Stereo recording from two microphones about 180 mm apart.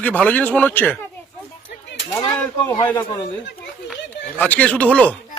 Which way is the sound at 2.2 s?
20° left (ahead or behind).